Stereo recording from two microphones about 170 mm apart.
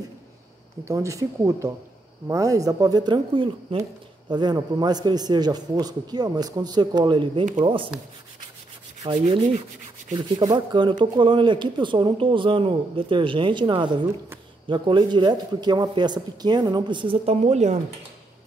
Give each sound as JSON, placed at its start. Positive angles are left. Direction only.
{"t": 0.8, "sound": "speech", "side_deg": -20}
{"t": 9.0, "sound": "speech", "side_deg": -30}